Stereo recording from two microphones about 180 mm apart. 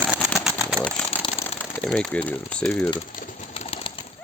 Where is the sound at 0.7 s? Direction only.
5° left (ahead or behind).